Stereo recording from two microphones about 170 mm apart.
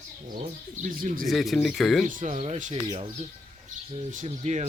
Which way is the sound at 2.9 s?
25° right (ahead or behind).